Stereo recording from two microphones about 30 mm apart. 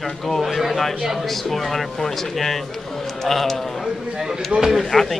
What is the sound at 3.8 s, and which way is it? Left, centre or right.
Speech, centre.